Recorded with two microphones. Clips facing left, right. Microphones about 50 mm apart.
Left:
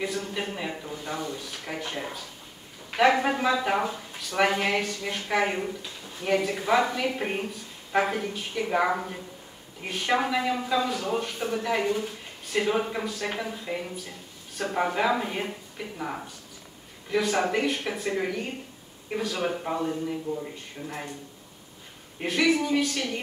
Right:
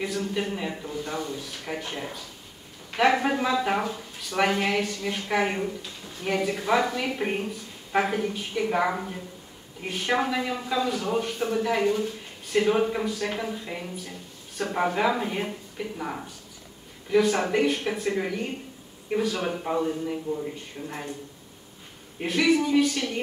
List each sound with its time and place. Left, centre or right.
0.0 s a woman's voice: centre
20.3 s speech: right
20.8 s a woman's voice: centre
22.2 s a woman's voice: centre